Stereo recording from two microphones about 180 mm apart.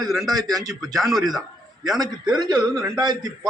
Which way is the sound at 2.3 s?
20° right (ahead or behind).